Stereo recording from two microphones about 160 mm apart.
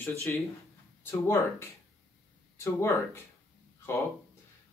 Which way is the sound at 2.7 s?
15° left (ahead or behind).